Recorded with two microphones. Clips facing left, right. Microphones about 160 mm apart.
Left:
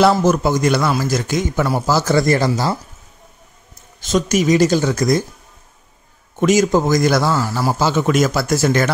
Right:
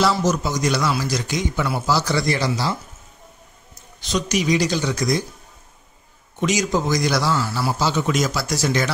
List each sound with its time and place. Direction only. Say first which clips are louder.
0.0 s a man's voice: left 6 dB; 55° left (ahead or behind)
4.0 s a man's voice: left 6 dB; 45° left (ahead or behind)
6.4 s a man's voice: left 7 dB; 50° left (ahead or behind)